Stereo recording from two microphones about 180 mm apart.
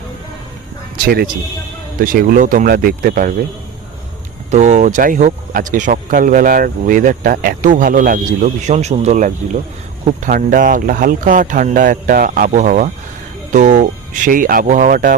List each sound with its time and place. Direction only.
1.0 s speech: 60° right (ahead or behind)
4.5 s speech: 40° right (ahead or behind)